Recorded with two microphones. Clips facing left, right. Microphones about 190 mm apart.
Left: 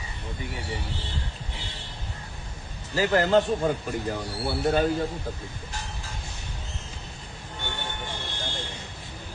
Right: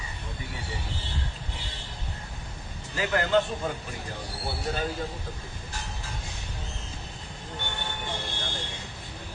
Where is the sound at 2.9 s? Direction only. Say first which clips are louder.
Left 4 dB; 35° left (ahead or behind).